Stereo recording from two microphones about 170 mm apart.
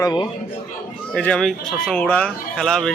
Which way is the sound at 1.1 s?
5° left (ahead or behind).